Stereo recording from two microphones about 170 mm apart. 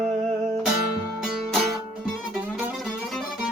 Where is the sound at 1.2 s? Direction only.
5° left (ahead or behind).